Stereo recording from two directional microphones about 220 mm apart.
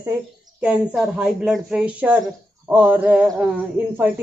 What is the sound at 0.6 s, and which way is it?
Speech, 5° right (ahead or behind).